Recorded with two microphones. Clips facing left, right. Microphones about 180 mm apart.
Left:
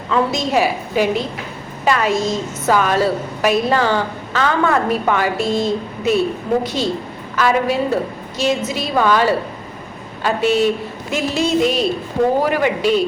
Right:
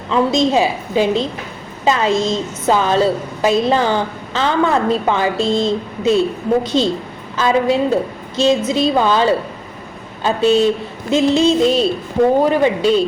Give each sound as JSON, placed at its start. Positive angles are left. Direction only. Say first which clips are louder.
{"t": 0.1, "sound": "a woman's voice", "louder": "right 3 dB", "side_deg": -25}